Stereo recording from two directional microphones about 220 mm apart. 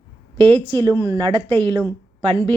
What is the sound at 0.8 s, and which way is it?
A woman's voice, 15° right (ahead or behind).